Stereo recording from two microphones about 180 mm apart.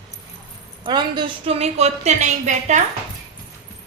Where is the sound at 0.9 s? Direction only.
25° right (ahead or behind); by 2.8 s 40° right (ahead or behind).